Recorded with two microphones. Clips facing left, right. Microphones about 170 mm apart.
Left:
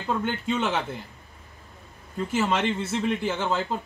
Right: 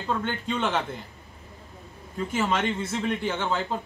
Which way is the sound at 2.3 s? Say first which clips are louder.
Left 1 dB; 5° left (ahead or behind).